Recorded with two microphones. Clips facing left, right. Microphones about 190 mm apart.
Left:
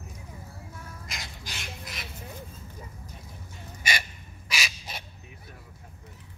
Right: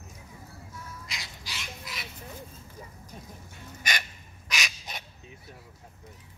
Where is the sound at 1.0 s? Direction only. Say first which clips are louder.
Left 2 dB; 50° left (ahead or behind).